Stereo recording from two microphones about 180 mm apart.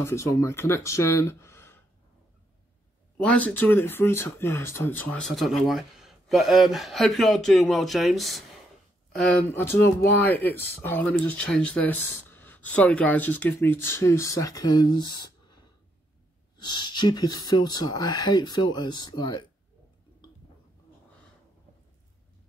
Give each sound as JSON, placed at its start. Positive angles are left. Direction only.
{"t": 0.0, "sound": "speech", "side_deg": 15}
{"t": 3.2, "sound": "speech", "side_deg": 5}
{"t": 16.5, "sound": "speech", "side_deg": 25}